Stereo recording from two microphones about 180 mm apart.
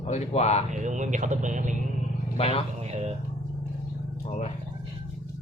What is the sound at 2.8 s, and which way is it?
Speech, 35° right (ahead or behind).